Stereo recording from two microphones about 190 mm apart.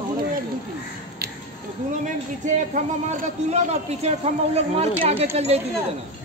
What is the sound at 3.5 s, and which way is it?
A man's voice, 35° right (ahead or behind).